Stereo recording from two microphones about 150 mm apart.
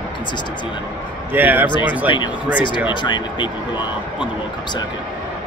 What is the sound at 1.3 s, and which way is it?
Speech, 10° right (ahead or behind).